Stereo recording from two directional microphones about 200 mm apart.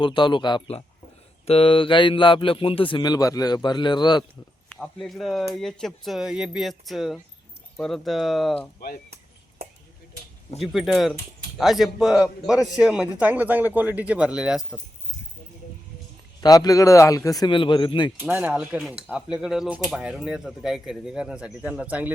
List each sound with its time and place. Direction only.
0.0 s speech: 25° left (ahead or behind)
4.7 s speech: centre (ahead or behind)
10.6 s speech: centre (ahead or behind)
16.4 s speech: 20° left (ahead or behind)
18.2 s speech: 10° right (ahead or behind)